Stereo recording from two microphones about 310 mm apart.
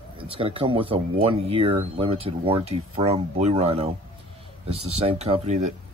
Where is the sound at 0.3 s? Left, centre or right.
Centre.